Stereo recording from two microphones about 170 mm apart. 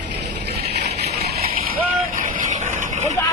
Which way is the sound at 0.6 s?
75° right (ahead or behind).